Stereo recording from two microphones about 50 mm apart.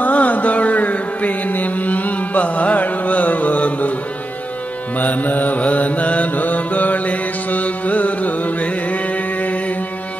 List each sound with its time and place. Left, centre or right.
0.0 s music: left
4.9 s mantra: left